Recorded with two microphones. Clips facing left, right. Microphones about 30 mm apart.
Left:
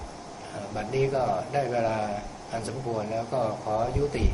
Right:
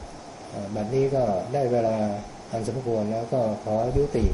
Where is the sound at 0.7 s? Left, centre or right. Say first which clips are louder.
Right 3 dB; left.